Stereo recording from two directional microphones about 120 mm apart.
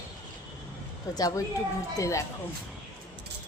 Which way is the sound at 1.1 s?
30° left (ahead or behind).